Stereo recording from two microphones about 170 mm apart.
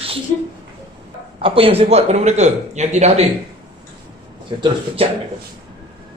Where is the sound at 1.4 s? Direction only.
35° right (ahead or behind).